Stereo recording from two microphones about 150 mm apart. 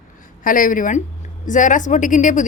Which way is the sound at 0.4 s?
65° left (ahead or behind).